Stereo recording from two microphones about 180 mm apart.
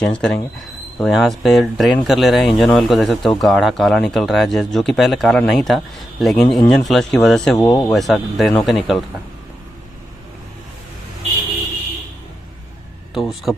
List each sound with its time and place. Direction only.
0.0 s speech: 5° left (ahead or behind)
7.5 s speech: 20° left (ahead or behind)
7.9 s speech: centre (ahead or behind)
13.1 s speech: centre (ahead or behind)